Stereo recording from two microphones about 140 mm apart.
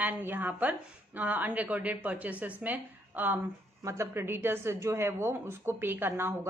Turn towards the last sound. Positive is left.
turn(degrees=-15)  # may be behind; listen again after turning